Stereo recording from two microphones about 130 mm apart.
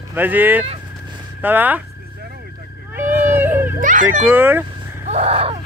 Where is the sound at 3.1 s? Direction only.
15° right (ahead or behind).